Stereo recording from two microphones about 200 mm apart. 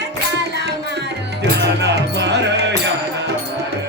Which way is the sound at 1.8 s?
60° right (ahead or behind).